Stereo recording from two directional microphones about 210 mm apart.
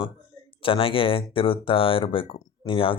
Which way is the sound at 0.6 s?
25° left (ahead or behind).